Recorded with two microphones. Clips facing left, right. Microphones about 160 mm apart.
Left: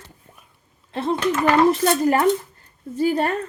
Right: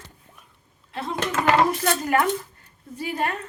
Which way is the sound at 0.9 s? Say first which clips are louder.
Left 7 dB; 30° left (ahead or behind).